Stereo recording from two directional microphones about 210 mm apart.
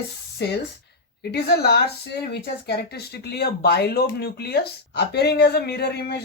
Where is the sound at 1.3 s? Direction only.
50° left (ahead or behind).